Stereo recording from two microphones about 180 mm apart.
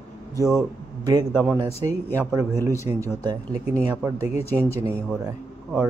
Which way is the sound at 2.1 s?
10° right (ahead or behind).